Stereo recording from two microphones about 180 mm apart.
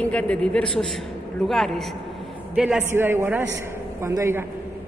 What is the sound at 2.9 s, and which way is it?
A man's voice, 15° right (ahead or behind).